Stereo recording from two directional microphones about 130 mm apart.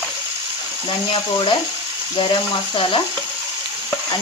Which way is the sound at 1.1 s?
40° left (ahead or behind).